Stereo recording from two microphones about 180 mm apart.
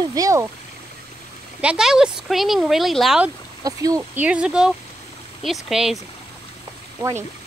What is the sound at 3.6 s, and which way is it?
Speech, 20° right (ahead or behind).